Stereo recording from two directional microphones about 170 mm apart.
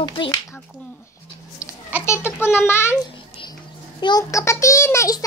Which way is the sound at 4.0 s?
20° left (ahead or behind).